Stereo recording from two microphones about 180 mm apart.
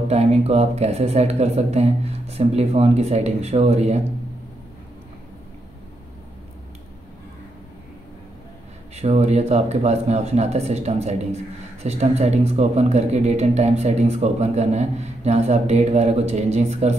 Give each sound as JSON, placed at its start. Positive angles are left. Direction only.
{"t": 0.1, "sound": "speech", "side_deg": -35}
{"t": 8.9, "sound": "speech", "side_deg": -35}